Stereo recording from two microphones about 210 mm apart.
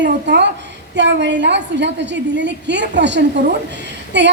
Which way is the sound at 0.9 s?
55° right (ahead or behind).